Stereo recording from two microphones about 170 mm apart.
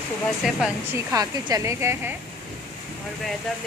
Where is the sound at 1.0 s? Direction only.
20° right (ahead or behind).